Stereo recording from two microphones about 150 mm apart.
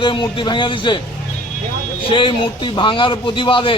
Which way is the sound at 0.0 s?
35° left (ahead or behind).